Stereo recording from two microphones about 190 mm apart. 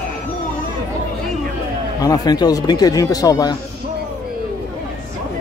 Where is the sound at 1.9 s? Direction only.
20° left (ahead or behind).